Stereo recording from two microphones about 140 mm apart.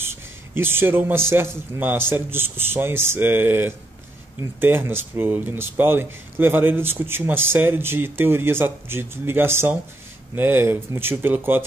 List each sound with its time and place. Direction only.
0.0 s speech: 15° right (ahead or behind)